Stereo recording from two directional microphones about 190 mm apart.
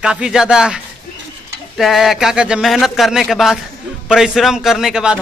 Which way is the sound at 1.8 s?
Centre (ahead or behind).